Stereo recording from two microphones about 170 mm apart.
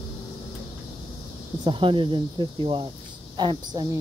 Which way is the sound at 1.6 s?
30° right (ahead or behind).